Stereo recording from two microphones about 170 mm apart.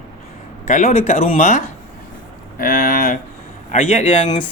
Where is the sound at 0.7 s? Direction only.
45° left (ahead or behind).